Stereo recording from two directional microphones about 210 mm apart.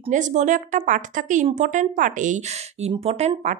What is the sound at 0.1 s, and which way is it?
A woman's voice, 35° right (ahead or behind).